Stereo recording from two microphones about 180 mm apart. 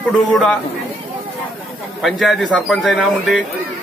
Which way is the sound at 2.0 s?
Centre (ahead or behind).